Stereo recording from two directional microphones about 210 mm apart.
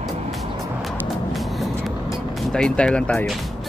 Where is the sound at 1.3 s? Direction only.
Centre (ahead or behind).